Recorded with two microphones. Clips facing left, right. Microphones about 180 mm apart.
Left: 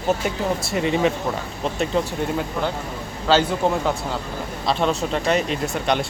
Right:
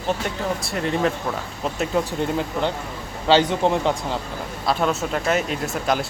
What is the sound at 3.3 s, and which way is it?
Speech, 15° right (ahead or behind).